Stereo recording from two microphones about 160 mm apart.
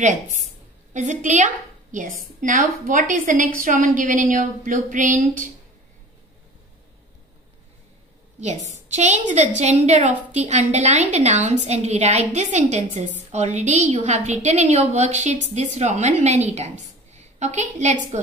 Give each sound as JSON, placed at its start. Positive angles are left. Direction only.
{"t": 0.0, "sound": "a woman's voice", "side_deg": -50}
{"t": 8.4, "sound": "a woman's voice", "side_deg": -45}